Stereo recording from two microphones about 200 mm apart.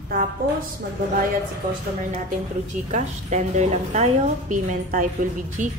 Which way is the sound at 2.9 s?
35° right (ahead or behind).